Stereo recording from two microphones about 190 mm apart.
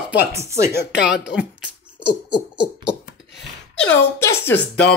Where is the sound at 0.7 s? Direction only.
60° left (ahead or behind).